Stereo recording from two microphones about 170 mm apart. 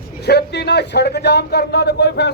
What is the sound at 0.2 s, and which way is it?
A man's voice, 75° left (ahead or behind).